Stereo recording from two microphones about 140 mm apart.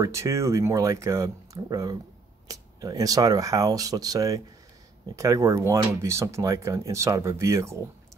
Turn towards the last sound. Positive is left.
turn(degrees=-20)  # may be behind; listen again after turning